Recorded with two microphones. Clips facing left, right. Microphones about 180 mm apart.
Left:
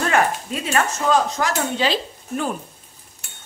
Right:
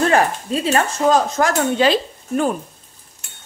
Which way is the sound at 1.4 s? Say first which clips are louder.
Right 6 dB; 50° right (ahead or behind).